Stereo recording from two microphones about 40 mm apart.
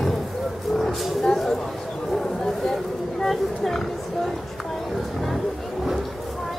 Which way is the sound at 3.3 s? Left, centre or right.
Centre.